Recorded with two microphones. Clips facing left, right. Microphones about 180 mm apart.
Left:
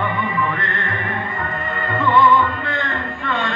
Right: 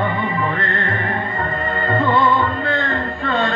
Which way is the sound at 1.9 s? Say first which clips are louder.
Left 1 dB; 35° right (ahead or behind).